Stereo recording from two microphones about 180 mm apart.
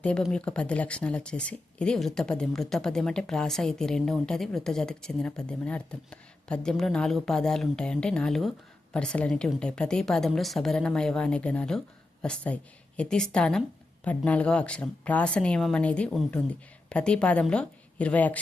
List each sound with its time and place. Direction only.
0.0 s a woman's voice: 5° left (ahead or behind)